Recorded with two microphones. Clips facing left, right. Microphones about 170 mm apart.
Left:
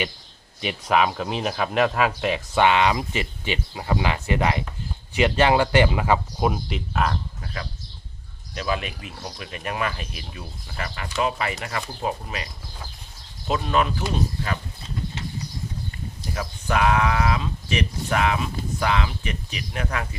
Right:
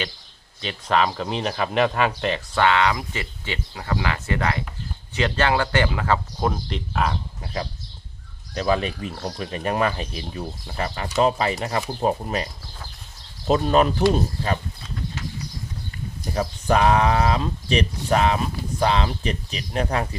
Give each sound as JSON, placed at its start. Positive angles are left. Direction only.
{"t": 0.6, "sound": "speech", "side_deg": 10}
{"t": 2.6, "sound": "speech", "side_deg": 15}
{"t": 8.5, "sound": "speech", "side_deg": -35}
{"t": 13.5, "sound": "speech", "side_deg": -35}
{"t": 16.3, "sound": "speech", "side_deg": -35}